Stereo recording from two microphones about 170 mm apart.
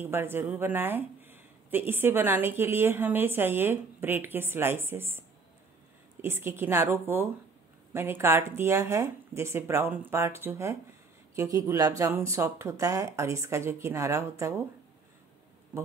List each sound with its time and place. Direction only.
0.0 s speech: 15° right (ahead or behind)
6.2 s speech: 15° right (ahead or behind)